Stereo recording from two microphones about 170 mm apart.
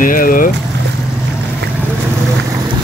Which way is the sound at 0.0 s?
55° left (ahead or behind).